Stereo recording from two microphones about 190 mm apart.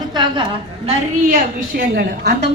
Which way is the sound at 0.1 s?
25° right (ahead or behind).